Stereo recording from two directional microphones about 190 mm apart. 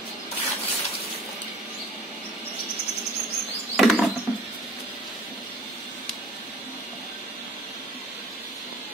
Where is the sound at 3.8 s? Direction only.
Centre (ahead or behind).